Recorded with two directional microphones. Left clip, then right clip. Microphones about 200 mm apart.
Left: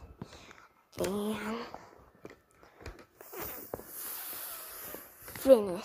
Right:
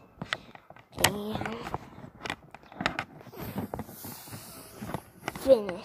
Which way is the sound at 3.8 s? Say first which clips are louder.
Right 1 dB; 35° left (ahead or behind).